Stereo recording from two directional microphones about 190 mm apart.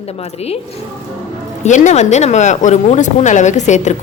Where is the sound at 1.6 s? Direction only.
40° left (ahead or behind).